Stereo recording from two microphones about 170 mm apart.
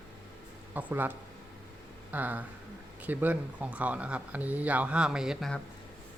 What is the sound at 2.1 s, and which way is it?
Speech, 10° right (ahead or behind).